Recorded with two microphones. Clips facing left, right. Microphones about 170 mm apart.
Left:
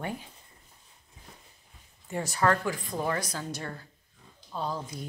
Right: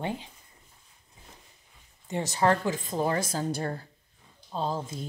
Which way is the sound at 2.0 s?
20° right (ahead or behind).